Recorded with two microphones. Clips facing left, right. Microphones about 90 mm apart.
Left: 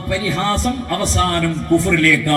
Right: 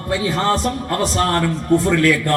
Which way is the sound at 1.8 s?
30° right (ahead or behind).